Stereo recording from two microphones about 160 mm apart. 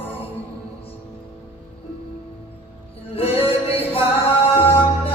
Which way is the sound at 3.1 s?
35° left (ahead or behind).